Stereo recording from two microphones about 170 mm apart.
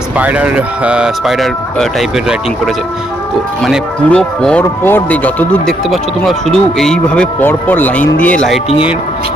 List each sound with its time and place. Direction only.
0.2 s speech: 10° right (ahead or behind)
3.6 s speech: centre (ahead or behind)